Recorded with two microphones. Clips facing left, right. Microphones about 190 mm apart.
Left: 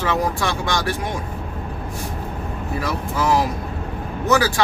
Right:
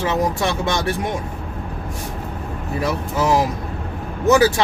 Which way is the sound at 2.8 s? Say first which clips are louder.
Right 3 dB; 20° right (ahead or behind).